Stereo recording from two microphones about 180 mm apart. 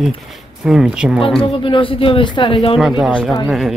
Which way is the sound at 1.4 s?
30° left (ahead or behind).